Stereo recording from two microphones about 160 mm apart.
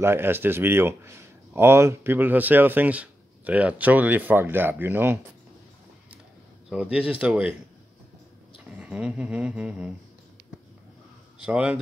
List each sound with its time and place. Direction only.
0.0 s speech: 15° right (ahead or behind)
6.7 s speech: 5° right (ahead or behind)
8.6 s speech: 5° right (ahead or behind)
11.4 s speech: 5° right (ahead or behind)